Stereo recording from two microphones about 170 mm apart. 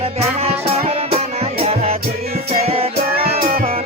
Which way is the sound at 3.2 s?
60° right (ahead or behind).